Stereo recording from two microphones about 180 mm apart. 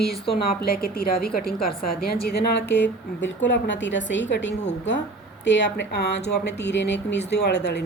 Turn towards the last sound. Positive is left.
turn(degrees=70)  # may be behind; listen again after turning